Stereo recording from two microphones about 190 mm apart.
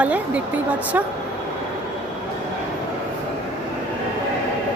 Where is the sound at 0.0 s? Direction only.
10° right (ahead or behind).